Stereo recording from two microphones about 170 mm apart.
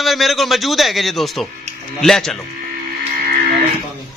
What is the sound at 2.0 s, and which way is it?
Speech, centre (ahead or behind).